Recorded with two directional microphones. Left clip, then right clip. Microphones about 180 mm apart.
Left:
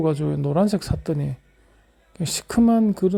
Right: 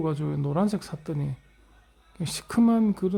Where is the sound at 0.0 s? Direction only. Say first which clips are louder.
Left 7 dB; 15° left (ahead or behind).